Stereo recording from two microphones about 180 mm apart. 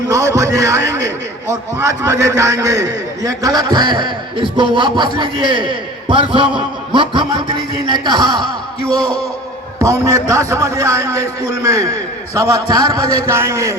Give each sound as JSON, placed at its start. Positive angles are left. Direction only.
{"t": 0.1, "sound": "a man's voice", "side_deg": -15}
{"t": 9.7, "sound": "a man's voice", "side_deg": -15}